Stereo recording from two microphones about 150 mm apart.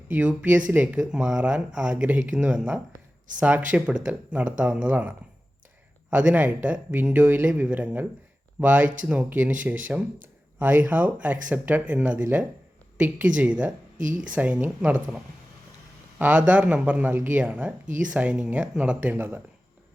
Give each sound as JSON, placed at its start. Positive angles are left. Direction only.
{"t": 0.1, "sound": "speech", "side_deg": -10}
{"t": 10.6, "sound": "speech", "side_deg": -10}
{"t": 17.8, "sound": "speech", "side_deg": -60}
{"t": 18.1, "sound": "speech", "side_deg": -10}